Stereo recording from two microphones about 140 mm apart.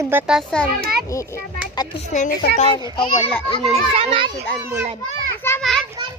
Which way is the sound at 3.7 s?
45° right (ahead or behind).